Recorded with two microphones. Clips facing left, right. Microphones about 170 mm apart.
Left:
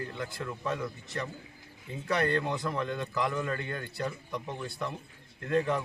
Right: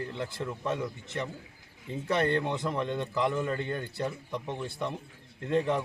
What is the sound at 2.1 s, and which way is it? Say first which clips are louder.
A man's voice: right 1 dB; 25° right (ahead or behind).